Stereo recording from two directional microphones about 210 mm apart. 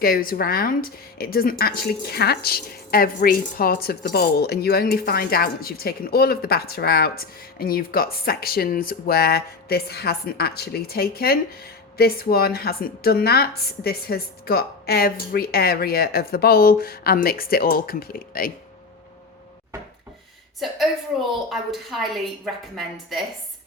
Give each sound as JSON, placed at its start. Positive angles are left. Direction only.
{"t": 0.0, "sound": "a woman's voice", "side_deg": 45}
{"t": 20.6, "sound": "a woman's voice", "side_deg": 0}